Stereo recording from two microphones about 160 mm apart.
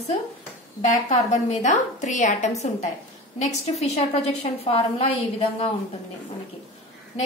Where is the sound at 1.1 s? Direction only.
45° left (ahead or behind).